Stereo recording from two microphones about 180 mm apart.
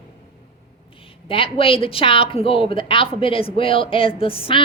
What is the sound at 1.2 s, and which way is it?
A woman's voice, 30° left (ahead or behind).